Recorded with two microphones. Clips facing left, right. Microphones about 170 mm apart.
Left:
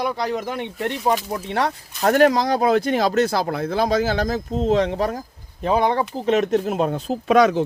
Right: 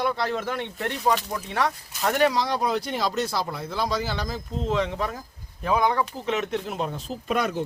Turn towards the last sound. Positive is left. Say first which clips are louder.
# left 10 dB
turn(degrees=90)